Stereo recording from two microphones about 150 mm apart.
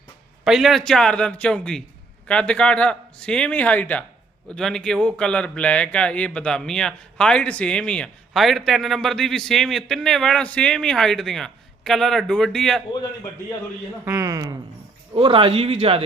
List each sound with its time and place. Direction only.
0.4 s speech: centre (ahead or behind)
14.0 s speech: 20° right (ahead or behind)
15.1 s speech: 35° right (ahead or behind)